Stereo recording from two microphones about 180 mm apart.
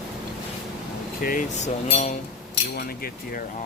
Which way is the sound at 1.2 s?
50° left (ahead or behind).